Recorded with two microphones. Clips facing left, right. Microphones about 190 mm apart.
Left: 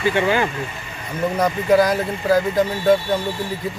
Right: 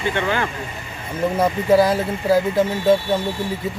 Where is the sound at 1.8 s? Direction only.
25° right (ahead or behind).